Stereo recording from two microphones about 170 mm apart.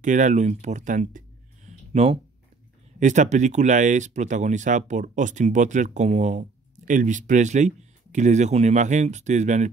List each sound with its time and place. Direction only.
0.0 s speech: 45° right (ahead or behind)
1.7 s a sound: 40° right (ahead or behind)
3.0 s speech: 45° right (ahead or behind)